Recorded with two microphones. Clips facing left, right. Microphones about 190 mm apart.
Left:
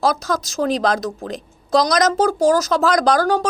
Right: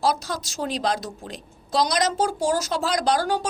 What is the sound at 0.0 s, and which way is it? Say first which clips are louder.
A woman's voice: left 5 dB; 45° left (ahead or behind).